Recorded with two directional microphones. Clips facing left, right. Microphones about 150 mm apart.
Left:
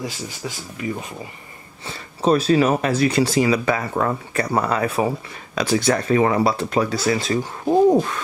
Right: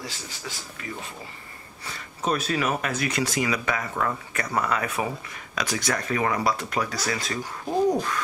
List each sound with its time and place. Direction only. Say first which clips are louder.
1.9 s speech: left 9 dB; 30° left (ahead or behind)
7.6 s speech: left 8 dB; 45° left (ahead or behind)